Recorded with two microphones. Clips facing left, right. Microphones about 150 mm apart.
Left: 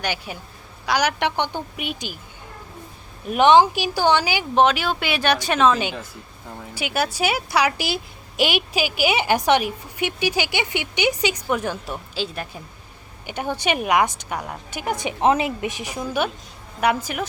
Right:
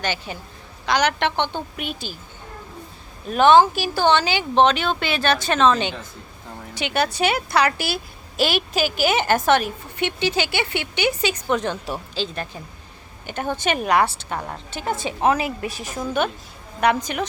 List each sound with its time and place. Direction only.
0.0 s a woman's voice: 10° left (ahead or behind)
3.2 s a woman's voice: 15° left (ahead or behind)